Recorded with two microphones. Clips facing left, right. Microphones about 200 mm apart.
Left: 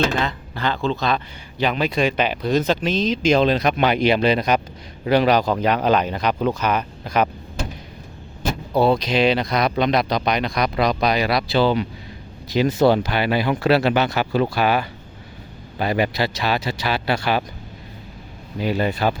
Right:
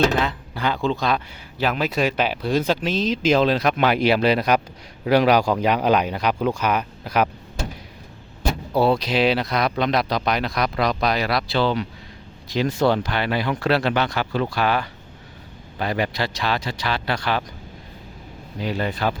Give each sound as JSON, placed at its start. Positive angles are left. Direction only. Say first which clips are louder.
{"t": 0.2, "sound": "speech", "louder": "even", "side_deg": -10}
{"t": 8.7, "sound": "speech", "louder": "left 2 dB", "side_deg": -5}
{"t": 18.6, "sound": "speech", "louder": "left 3 dB", "side_deg": 10}